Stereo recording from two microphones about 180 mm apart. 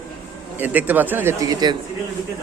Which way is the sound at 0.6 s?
10° right (ahead or behind).